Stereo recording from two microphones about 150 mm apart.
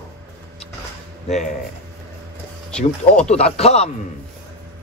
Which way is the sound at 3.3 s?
45° left (ahead or behind).